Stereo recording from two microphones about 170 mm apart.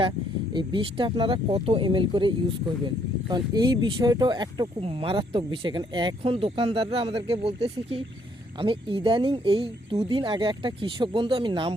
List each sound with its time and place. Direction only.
0.5 s speech: 30° right (ahead or behind)